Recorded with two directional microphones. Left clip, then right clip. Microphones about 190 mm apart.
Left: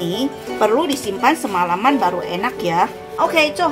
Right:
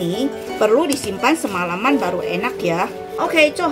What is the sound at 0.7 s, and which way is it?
A woman's voice, 15° left (ahead or behind).